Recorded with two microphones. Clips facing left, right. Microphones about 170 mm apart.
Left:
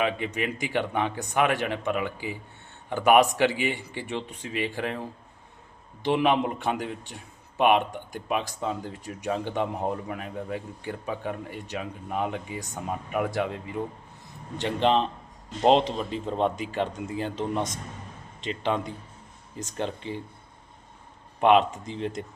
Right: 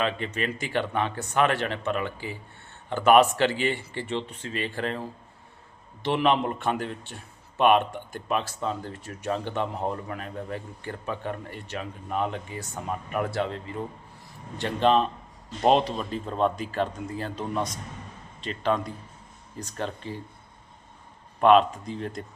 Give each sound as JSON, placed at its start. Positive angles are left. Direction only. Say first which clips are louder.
{"t": 0.0, "sound": "speech", "louder": "left 1 dB", "side_deg": 15}
{"t": 21.4, "sound": "speech", "louder": "right 2 dB", "side_deg": 20}